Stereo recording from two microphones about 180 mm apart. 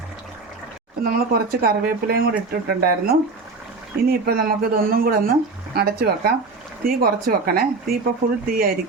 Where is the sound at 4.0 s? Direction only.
60° right (ahead or behind).